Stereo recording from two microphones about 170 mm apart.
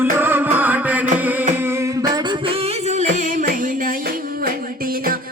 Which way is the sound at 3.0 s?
45° right (ahead or behind).